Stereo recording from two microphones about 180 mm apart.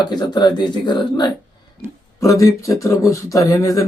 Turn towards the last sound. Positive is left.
turn(degrees=15)  # may be behind; listen again after turning